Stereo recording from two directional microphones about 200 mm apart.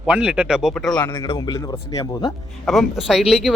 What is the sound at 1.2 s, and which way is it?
Speech, 25° left (ahead or behind).